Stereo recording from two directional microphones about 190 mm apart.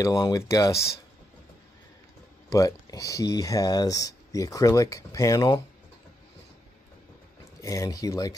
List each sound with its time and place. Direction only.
0.0 s speech: 20° left (ahead or behind)
2.5 s speech: 15° left (ahead or behind)
7.6 s speech: 15° left (ahead or behind)